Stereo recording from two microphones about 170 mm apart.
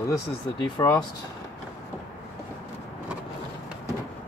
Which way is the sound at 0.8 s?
25° left (ahead or behind).